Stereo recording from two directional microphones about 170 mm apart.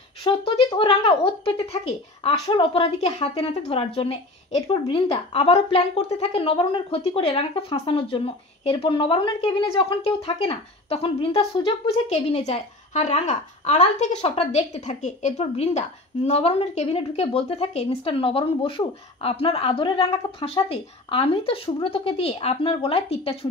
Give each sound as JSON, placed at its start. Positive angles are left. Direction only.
{"t": 0.3, "sound": "speech", "side_deg": 30}